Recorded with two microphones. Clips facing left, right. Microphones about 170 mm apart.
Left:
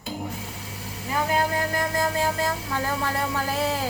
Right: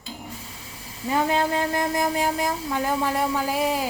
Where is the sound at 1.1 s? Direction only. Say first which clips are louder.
Right 2 dB; 25° right (ahead or behind).